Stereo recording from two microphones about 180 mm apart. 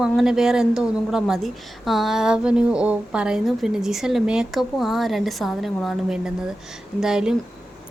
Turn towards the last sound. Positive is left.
turn(degrees=-5)  # may be behind; listen again after turning